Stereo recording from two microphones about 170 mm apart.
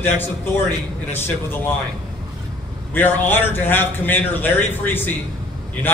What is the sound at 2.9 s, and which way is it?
A man's voice, 10° left (ahead or behind).